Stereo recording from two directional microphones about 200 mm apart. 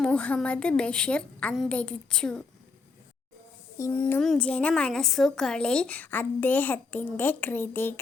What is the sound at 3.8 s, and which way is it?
A woman's voice, 10° left (ahead or behind).